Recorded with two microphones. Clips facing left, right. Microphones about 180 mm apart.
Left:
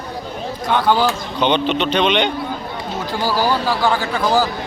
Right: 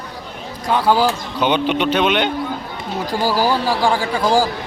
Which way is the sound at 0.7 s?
5° right (ahead or behind).